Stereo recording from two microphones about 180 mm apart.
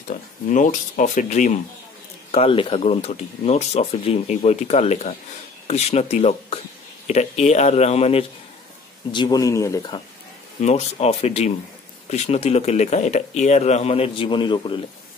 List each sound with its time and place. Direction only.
0.1 s speech: 45° left (ahead or behind)
2.3 s speech: 30° left (ahead or behind)
9.1 s speech: 25° left (ahead or behind)
10.6 s speech: 35° left (ahead or behind)